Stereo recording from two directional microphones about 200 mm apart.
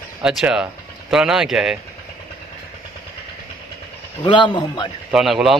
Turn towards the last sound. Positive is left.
turn(degrees=0)  # may be behind; listen again after turning